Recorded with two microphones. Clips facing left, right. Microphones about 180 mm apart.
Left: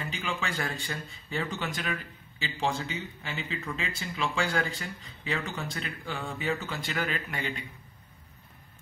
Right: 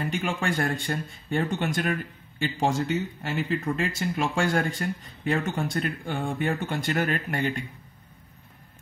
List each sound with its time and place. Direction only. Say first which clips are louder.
0.1 s speech: right 6 dB; 55° right (ahead or behind)